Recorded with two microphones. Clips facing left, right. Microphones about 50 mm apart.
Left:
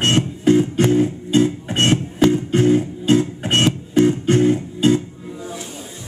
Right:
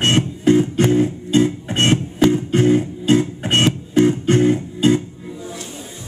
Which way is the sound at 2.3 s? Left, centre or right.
Right.